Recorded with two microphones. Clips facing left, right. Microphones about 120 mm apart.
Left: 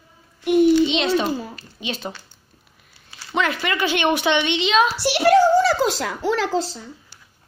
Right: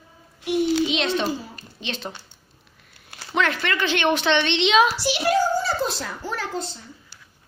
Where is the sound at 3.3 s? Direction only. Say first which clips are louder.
Left 1 dB; 5° left (ahead or behind).